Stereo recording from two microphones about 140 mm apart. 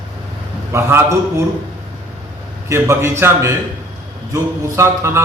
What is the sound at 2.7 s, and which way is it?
A man's voice, 20° right (ahead or behind).